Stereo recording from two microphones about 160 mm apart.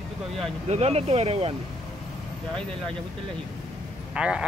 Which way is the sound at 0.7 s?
40° right (ahead or behind).